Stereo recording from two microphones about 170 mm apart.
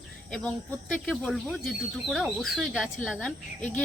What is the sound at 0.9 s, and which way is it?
A woman's voice, 5° left (ahead or behind).